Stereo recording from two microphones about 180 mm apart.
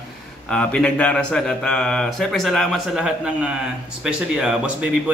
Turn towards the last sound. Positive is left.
turn(degrees=-5)  # may be behind; listen again after turning